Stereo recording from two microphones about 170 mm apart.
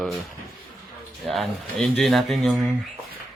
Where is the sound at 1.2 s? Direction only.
Centre (ahead or behind).